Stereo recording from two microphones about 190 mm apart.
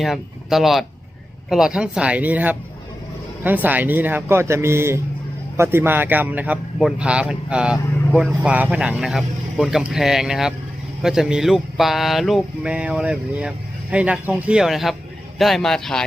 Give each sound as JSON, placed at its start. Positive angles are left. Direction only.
{"t": 0.0, "sound": "a man's voice", "side_deg": 0}